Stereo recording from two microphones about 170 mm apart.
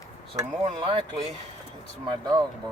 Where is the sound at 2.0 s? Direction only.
25° right (ahead or behind).